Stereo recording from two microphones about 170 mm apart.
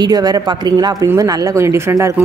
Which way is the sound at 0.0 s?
25° right (ahead or behind).